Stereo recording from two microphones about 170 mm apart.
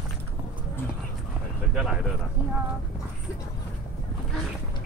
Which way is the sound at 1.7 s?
Centre (ahead or behind).